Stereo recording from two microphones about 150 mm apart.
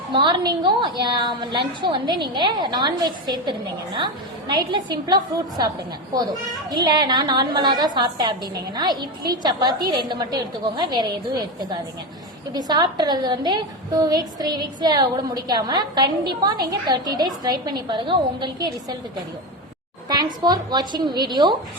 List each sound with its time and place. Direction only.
0.1 s a woman's voice: 30° right (ahead or behind)
20.1 s a woman's voice: 30° right (ahead or behind)